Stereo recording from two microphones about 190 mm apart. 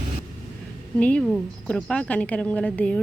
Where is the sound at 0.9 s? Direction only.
5° left (ahead or behind).